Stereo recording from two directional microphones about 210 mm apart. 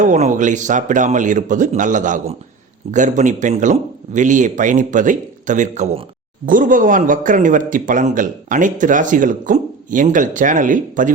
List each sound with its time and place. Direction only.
0.0 s a man's voice: 35° right (ahead or behind)